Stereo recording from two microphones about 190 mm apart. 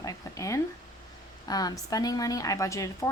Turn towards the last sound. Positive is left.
turn(degrees=15)  # may be behind; listen again after turning